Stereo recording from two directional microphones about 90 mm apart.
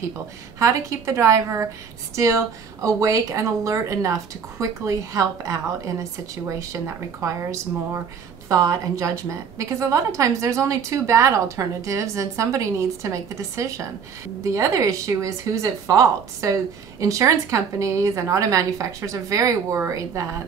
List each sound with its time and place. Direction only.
0.6 s a woman's voice: 35° right (ahead or behind)